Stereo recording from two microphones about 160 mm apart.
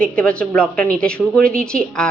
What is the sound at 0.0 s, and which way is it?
A woman's voice, 5° left (ahead or behind).